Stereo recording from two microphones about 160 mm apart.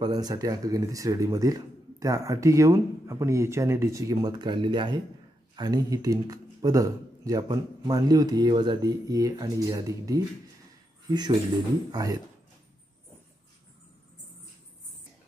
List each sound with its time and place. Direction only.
0.0 s speech: 25° right (ahead or behind)